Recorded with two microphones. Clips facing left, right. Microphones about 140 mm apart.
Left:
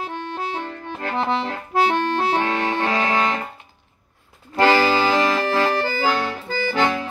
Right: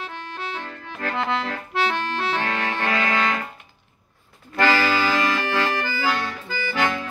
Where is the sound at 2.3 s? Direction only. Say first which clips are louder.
Left 4 dB; 25° left (ahead or behind).